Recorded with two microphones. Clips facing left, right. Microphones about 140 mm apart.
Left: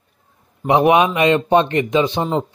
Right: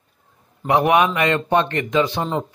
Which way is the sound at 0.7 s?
20° left (ahead or behind).